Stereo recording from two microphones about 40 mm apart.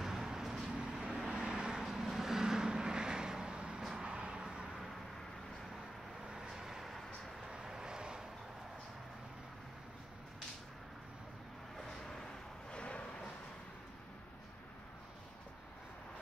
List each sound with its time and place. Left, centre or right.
0.0 s vehicle: centre
0.7 s vehicle: right
1.9 s vehicle: centre; by 4.6 s right
6.2 s vehicle: centre
7.5 s vehicle: centre
12.7 s a sound: left